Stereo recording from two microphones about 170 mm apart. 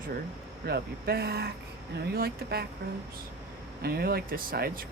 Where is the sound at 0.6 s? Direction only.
65° right (ahead or behind).